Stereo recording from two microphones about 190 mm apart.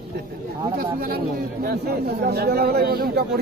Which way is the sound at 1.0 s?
50° right (ahead or behind).